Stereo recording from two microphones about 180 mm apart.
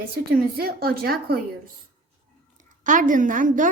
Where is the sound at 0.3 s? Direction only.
55° right (ahead or behind).